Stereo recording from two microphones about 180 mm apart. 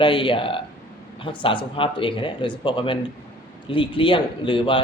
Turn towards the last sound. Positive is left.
turn(degrees=30)  # may be behind; listen again after turning